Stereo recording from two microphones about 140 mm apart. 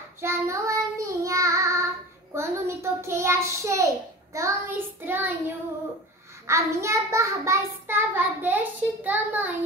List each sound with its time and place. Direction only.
0.2 s child singing: 20° right (ahead or behind)
6.4 s child singing: 20° right (ahead or behind)